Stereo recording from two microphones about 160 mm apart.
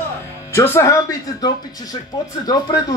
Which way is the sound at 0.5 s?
15° left (ahead or behind).